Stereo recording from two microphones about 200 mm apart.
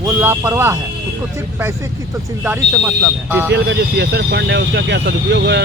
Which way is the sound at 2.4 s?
10° right (ahead or behind).